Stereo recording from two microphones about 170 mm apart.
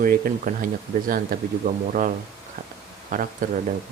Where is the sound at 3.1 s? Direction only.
50° right (ahead or behind).